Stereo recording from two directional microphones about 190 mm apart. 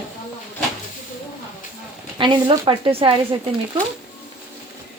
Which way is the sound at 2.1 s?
25° right (ahead or behind).